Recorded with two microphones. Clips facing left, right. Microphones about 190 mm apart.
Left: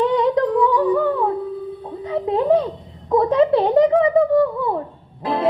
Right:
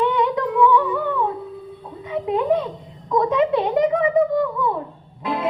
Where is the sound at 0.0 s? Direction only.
35° left (ahead or behind).